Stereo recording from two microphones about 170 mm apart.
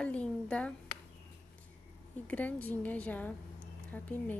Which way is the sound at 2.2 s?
10° left (ahead or behind).